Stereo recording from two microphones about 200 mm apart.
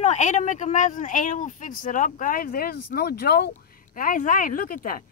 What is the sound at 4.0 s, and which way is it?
Speech, 40° left (ahead or behind).